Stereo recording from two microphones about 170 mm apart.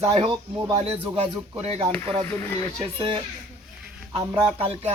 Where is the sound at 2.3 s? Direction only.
15° left (ahead or behind).